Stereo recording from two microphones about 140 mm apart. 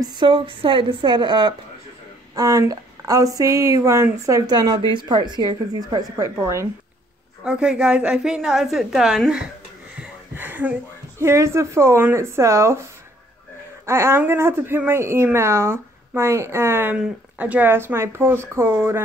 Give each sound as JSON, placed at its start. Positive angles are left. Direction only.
{"t": 0.0, "sound": "speech", "side_deg": -30}
{"t": 7.4, "sound": "a woman's voice", "side_deg": -5}
{"t": 9.9, "sound": "a sound", "side_deg": -15}
{"t": 11.1, "sound": "speech", "side_deg": -20}
{"t": 13.8, "sound": "speech", "side_deg": -20}